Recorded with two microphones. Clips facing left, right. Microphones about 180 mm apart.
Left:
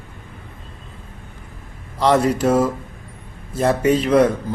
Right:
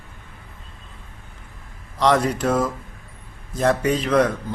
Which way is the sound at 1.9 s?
5° left (ahead or behind).